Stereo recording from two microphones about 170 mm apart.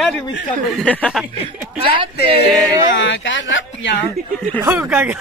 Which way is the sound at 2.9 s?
90° left.